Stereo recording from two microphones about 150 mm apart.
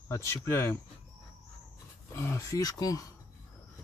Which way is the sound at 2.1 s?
20° left (ahead or behind).